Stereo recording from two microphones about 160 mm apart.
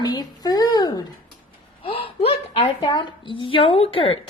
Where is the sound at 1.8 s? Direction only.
35° left (ahead or behind).